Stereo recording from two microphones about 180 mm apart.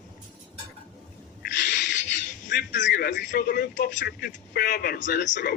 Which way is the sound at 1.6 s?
75° left (ahead or behind).